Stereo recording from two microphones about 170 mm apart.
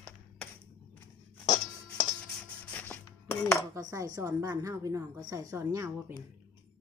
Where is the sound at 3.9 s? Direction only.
20° right (ahead or behind).